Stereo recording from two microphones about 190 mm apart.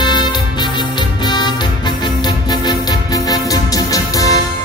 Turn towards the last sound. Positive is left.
turn(degrees=20)  # may be behind; listen again after turning